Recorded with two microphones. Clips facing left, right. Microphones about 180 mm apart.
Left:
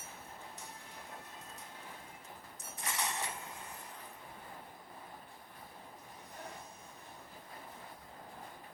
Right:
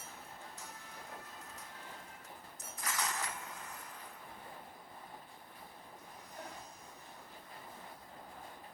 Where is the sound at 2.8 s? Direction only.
25° left (ahead or behind).